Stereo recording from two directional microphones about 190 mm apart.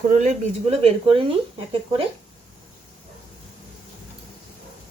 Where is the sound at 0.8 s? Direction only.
30° right (ahead or behind).